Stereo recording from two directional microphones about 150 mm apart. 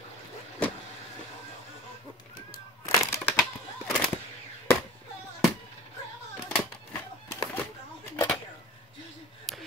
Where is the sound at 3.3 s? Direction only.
5° right (ahead or behind).